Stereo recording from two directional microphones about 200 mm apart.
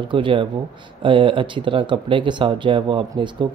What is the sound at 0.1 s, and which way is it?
Speech, 25° right (ahead or behind).